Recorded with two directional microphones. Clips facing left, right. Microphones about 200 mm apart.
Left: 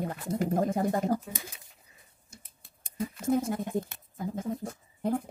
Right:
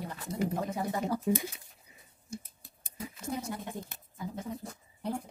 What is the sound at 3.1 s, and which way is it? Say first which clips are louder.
Speech: left 9 dB; 50° left (ahead or behind).